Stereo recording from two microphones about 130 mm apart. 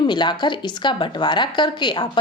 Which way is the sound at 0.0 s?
35° left (ahead or behind).